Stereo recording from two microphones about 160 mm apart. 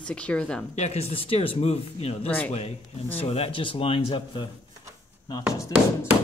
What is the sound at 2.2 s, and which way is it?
Speech, 10° left (ahead or behind).